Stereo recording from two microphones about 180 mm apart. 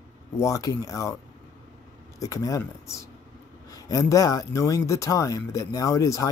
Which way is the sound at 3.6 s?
20° left (ahead or behind).